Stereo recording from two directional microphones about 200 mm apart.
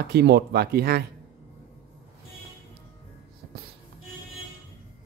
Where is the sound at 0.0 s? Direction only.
55° right (ahead or behind).